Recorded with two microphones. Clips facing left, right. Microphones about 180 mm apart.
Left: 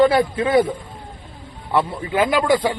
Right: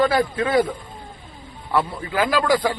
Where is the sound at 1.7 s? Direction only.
25° left (ahead or behind).